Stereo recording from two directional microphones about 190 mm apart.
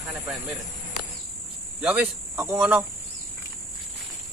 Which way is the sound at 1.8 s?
10° right (ahead or behind).